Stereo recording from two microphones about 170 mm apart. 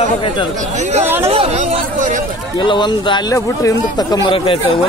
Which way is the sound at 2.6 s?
30° left (ahead or behind).